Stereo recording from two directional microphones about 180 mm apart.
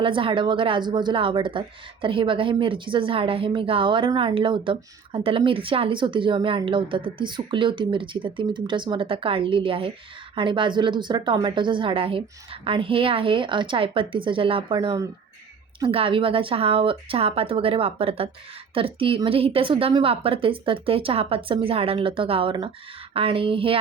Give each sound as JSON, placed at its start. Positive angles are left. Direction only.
{"t": 0.0, "sound": "a woman's voice", "side_deg": -30}